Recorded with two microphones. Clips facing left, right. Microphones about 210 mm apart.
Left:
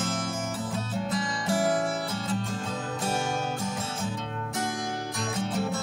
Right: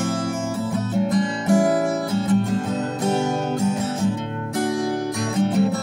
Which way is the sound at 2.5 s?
65° right (ahead or behind).